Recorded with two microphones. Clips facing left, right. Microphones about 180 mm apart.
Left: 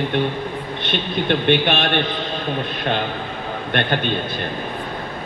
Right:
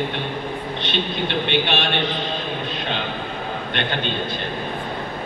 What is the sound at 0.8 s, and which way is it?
A man's voice, 55° left (ahead or behind).